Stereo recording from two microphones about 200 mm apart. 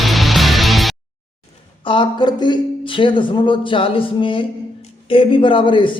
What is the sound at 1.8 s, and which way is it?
Speech, 25° left (ahead or behind).